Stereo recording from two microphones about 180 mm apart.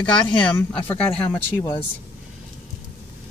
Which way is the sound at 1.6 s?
20° left (ahead or behind).